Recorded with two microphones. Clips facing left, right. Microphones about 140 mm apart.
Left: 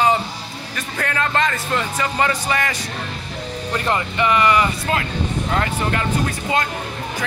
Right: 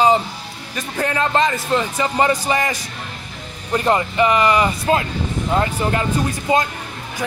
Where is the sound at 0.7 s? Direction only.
20° right (ahead or behind).